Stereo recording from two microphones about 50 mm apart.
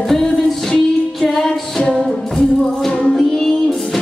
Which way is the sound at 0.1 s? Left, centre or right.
Centre.